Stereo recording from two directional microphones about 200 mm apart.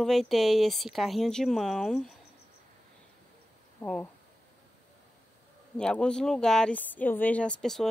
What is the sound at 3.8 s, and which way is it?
Speech, 5° left (ahead or behind).